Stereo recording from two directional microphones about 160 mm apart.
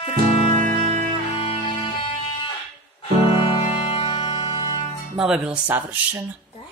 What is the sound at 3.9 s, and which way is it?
Music, 30° left (ahead or behind).